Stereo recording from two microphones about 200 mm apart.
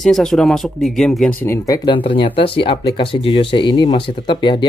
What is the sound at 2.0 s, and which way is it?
Speech, 25° left (ahead or behind).